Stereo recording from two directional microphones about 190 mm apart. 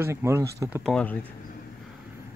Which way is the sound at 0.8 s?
5° left (ahead or behind).